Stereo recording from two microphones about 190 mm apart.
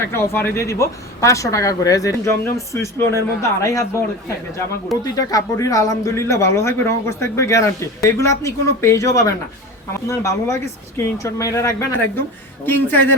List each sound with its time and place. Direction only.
0.0 s speech: 15° left (ahead or behind)
5.1 s speech: 15° left (ahead or behind)